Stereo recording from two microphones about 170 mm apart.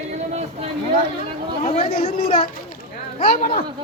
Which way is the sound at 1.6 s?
40° left (ahead or behind).